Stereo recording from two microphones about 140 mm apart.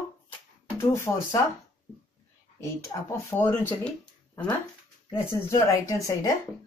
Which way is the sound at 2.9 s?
30° left (ahead or behind).